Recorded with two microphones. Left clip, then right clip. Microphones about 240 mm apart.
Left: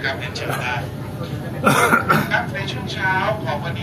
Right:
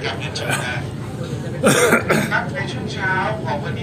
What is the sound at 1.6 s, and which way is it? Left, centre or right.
Cough, centre.